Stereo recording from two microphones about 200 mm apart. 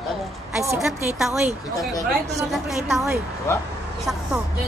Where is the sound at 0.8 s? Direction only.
5° right (ahead or behind).